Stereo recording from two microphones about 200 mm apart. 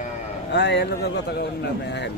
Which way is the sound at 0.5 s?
60° left (ahead or behind).